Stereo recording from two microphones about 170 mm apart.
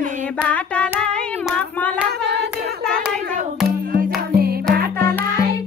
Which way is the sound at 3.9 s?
60° right (ahead or behind).